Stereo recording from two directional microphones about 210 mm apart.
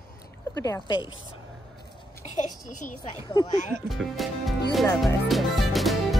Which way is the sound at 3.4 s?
15° left (ahead or behind).